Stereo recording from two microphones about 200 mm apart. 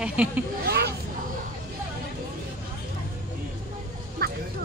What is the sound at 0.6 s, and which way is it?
Speech, 55° right (ahead or behind).